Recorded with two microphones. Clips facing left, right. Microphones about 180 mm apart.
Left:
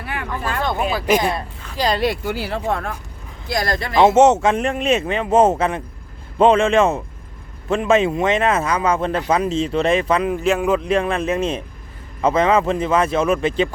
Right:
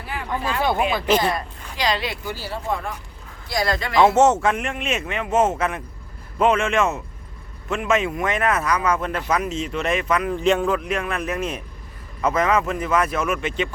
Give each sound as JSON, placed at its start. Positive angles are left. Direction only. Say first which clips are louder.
{"t": 0.0, "sound": "a sound", "louder": "left 1 dB", "side_deg": 60}
{"t": 0.6, "sound": "speech", "louder": "even", "side_deg": -5}
{"t": 1.7, "sound": "speech", "louder": "left 5 dB", "side_deg": 45}
{"t": 2.5, "sound": "speech", "louder": "even", "side_deg": 70}
{"t": 3.9, "sound": "a man's voice", "louder": "left 3 dB", "side_deg": 20}
{"t": 10.3, "sound": "speech", "louder": "even", "side_deg": 5}
{"t": 10.7, "sound": "speech", "louder": "left 5 dB", "side_deg": 30}